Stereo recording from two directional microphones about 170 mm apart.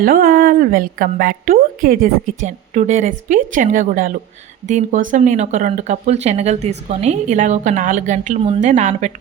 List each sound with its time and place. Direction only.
0.0 s speech: 55° right (ahead or behind)